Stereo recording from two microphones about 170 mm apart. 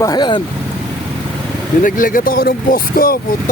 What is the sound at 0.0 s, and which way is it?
Speech, 25° left (ahead or behind).